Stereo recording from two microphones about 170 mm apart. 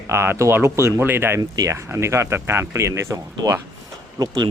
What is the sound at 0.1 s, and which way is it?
Speech, 15° right (ahead or behind).